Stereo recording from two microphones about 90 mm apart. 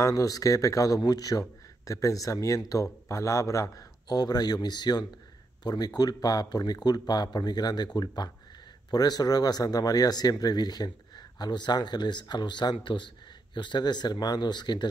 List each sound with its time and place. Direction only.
0.0 s a man's voice: 40° left (ahead or behind)